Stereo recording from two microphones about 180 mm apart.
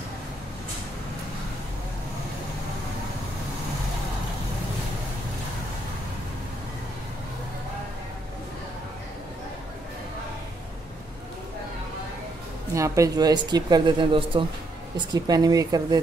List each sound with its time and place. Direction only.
12.7 s speech: 15° right (ahead or behind)